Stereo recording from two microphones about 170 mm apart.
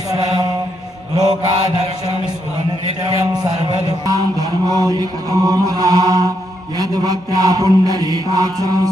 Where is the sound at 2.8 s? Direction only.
35° left (ahead or behind).